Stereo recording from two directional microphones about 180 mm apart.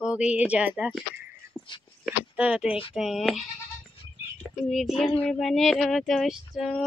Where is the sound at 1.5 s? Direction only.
10° left (ahead or behind).